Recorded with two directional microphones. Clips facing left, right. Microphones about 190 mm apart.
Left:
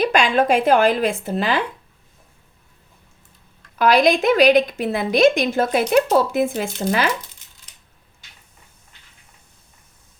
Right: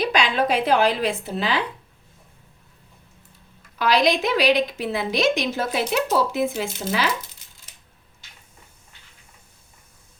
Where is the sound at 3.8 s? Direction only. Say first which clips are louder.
Left 4 dB; 50° left (ahead or behind).